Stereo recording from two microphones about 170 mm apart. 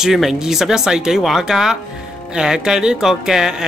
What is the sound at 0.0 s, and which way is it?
Speech, centre (ahead or behind).